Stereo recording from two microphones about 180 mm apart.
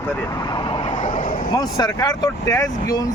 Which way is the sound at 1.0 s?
40° left (ahead or behind).